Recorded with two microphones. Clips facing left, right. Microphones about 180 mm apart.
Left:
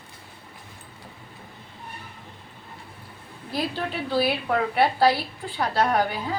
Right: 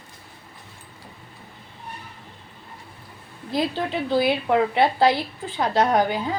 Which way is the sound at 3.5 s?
20° right (ahead or behind).